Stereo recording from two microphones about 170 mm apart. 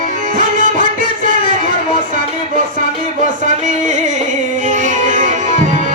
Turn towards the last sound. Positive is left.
turn(degrees=-50)  # may be behind; listen again after turning